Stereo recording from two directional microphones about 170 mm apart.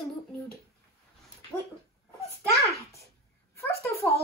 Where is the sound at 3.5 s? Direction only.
15° left (ahead or behind).